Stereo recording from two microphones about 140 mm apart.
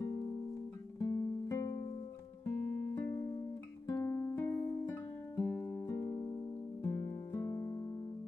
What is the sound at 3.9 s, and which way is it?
Music, 20° left (ahead or behind).